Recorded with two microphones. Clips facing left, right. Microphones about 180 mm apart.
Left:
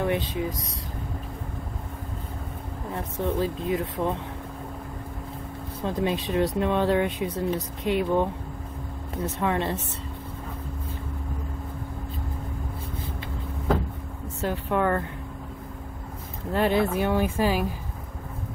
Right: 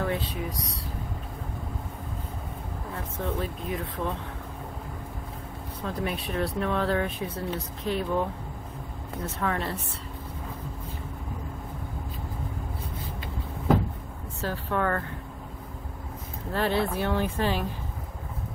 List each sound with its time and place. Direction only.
0.0 s speech: 20° left (ahead or behind)
3.2 s speech: 25° left (ahead or behind)
5.9 s speech: 25° left (ahead or behind)
14.4 s speech: 15° left (ahead or behind)
16.5 s speech: 15° left (ahead or behind)